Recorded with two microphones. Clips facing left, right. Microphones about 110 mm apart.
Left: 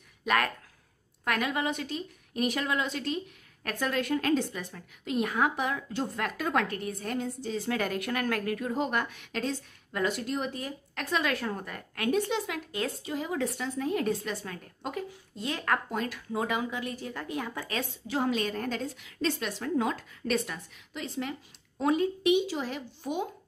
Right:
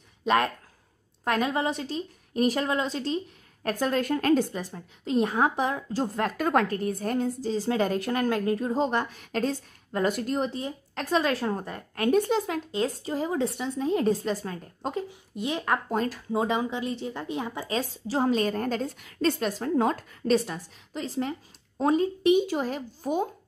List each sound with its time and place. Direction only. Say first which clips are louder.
0.2 s a woman's voice: right 4 dB; 30° right (ahead or behind)
15.0 s a woman's voice: right 4 dB; 20° right (ahead or behind)
15.9 s a woman's voice: right 5 dB; 35° right (ahead or behind); by 17.7 s 20° right (ahead or behind)
18.0 s a woman's voice: right 4 dB; 35° right (ahead or behind)